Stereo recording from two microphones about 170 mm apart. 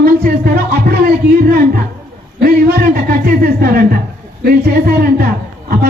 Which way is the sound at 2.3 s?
60° right (ahead or behind).